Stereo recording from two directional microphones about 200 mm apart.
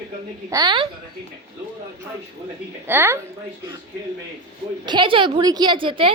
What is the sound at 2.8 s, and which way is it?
Speech, 10° right (ahead or behind).